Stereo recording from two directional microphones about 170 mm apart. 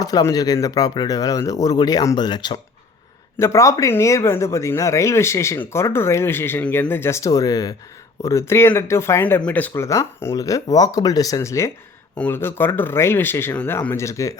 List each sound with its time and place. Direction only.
0.0 s speech: 20° left (ahead or behind)